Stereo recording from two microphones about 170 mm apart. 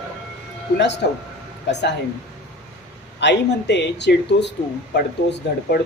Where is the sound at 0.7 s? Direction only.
90° left.